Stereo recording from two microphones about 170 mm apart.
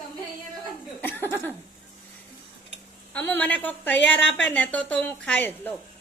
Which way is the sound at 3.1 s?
10° left (ahead or behind).